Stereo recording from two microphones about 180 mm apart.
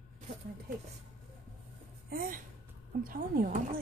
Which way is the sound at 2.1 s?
50° right (ahead or behind).